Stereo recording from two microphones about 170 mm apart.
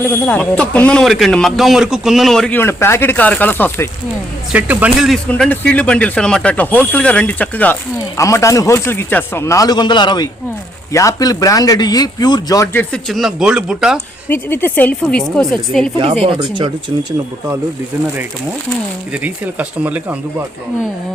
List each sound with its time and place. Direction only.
0.0 s speech: 10° left (ahead or behind)
4.5 s a man's voice: 10° right (ahead or behind); by 12.8 s 20° left (ahead or behind)
12.9 s speech: centre (ahead or behind)
14.3 s speech: 10° left (ahead or behind)
16.2 s speech: 30° right (ahead or behind)
19.1 s speech: 10° right (ahead or behind)